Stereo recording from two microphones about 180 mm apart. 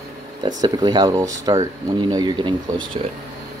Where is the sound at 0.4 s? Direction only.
20° right (ahead or behind).